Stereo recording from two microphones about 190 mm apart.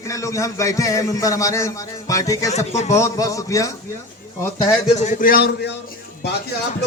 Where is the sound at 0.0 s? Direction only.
15° left (ahead or behind).